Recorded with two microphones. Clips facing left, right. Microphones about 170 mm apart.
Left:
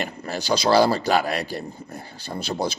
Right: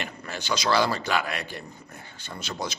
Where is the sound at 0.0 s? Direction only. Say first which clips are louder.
Left 6 dB; 35° left (ahead or behind).